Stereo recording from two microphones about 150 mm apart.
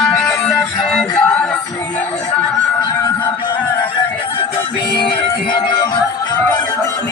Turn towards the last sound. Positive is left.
turn(degrees=30)  # may be behind; listen again after turning